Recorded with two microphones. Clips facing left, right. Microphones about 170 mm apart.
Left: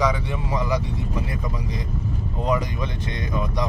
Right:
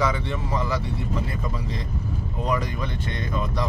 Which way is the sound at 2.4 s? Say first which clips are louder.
Left 3 dB; 20° left (ahead or behind).